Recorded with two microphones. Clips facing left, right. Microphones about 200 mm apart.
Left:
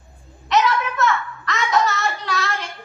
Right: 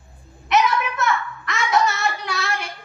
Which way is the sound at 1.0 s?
15° right (ahead or behind).